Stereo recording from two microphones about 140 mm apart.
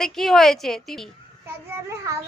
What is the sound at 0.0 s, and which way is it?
A woman's voice, centre (ahead or behind).